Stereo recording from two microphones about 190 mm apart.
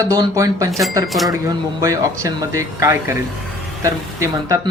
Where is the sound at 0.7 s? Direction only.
Centre (ahead or behind).